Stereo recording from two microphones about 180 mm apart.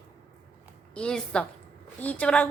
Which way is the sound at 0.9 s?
5° left (ahead or behind).